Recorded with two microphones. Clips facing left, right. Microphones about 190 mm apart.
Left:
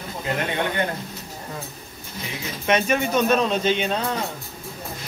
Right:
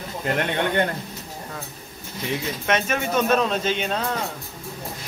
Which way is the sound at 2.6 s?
Centre (ahead or behind).